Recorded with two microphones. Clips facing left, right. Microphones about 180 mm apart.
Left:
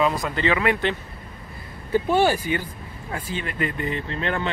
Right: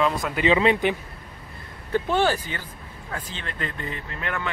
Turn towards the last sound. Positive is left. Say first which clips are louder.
# left 4 dB
turn(degrees=30)  # may be behind; listen again after turning